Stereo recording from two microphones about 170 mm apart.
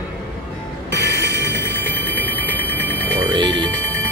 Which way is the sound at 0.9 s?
90° right.